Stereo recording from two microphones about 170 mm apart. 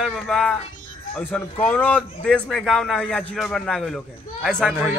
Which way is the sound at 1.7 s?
10° left (ahead or behind).